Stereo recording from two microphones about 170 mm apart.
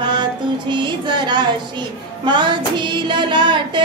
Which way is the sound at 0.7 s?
25° right (ahead or behind).